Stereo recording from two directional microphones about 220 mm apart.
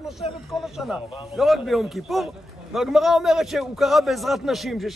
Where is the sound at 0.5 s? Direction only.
Centre (ahead or behind).